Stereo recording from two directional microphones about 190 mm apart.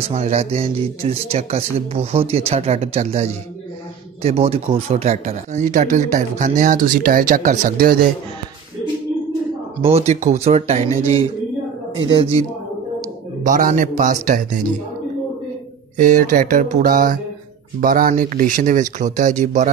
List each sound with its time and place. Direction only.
0.1 s speech: 35° right (ahead or behind)
9.8 s speech: 30° right (ahead or behind)
12.0 s speech: 25° right (ahead or behind)
13.4 s speech: 45° right (ahead or behind)
16.0 s speech: 45° right (ahead or behind)